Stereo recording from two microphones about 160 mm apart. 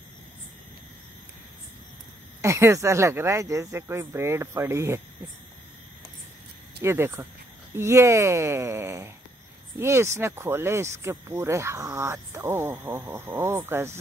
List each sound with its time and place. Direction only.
2.4 s speech: 20° right (ahead or behind)
6.8 s speech: 15° right (ahead or behind)